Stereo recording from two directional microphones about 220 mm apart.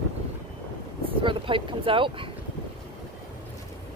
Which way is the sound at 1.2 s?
20° right (ahead or behind).